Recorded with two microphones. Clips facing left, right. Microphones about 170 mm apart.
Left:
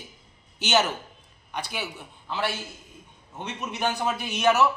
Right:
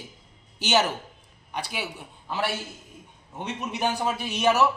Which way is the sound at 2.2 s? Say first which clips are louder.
Even; 10° right (ahead or behind).